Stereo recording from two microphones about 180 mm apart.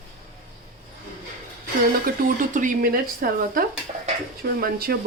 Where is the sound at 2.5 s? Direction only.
45° right (ahead or behind).